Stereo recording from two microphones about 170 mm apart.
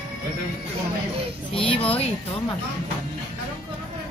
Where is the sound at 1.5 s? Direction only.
30° left (ahead or behind).